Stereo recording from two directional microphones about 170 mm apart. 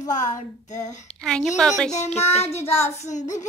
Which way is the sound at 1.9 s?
40° left (ahead or behind).